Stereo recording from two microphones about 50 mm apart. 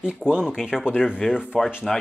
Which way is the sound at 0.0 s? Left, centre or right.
Centre.